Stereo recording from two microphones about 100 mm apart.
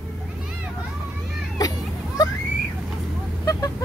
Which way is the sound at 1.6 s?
40° left (ahead or behind).